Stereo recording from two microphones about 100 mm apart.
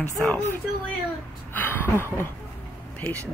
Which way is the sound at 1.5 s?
20° left (ahead or behind).